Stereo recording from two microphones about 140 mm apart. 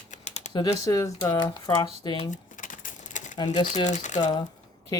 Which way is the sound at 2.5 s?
70° left (ahead or behind).